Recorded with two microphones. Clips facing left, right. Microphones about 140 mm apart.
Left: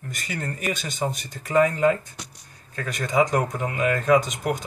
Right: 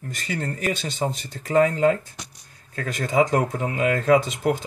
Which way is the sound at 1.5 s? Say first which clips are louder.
Right 1 dB; 35° right (ahead or behind).